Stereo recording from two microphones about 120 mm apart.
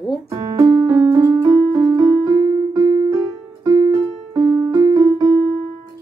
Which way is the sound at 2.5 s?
30° right (ahead or behind).